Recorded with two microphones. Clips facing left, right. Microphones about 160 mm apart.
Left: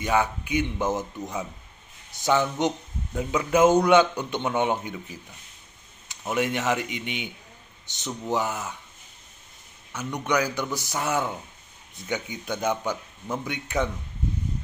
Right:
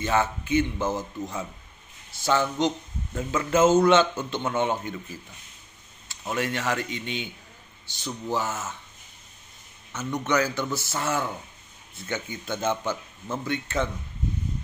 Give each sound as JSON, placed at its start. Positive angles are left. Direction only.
{"t": 0.0, "sound": "speech", "side_deg": 15}
{"t": 9.9, "sound": "speech", "side_deg": 10}